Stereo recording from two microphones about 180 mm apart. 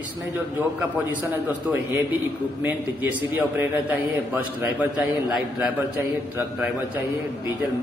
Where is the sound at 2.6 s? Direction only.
10° right (ahead or behind).